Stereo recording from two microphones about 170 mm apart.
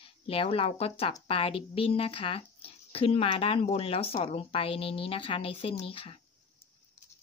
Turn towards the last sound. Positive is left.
turn(degrees=30)  # may be behind; listen again after turning